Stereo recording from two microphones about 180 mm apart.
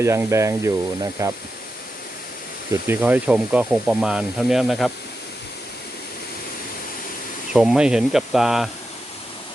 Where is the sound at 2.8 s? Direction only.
10° right (ahead or behind).